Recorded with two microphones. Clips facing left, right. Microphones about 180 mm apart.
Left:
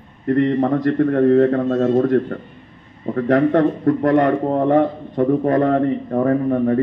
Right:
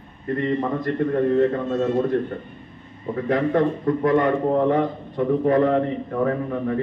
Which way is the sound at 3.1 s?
65° left (ahead or behind).